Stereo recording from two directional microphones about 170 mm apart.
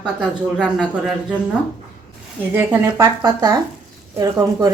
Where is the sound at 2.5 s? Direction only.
10° right (ahead or behind).